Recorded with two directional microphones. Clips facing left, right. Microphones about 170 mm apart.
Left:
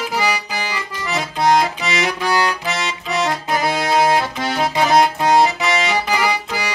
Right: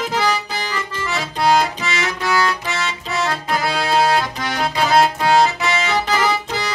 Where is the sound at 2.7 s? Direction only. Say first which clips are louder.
Left 1 dB; 15° left (ahead or behind).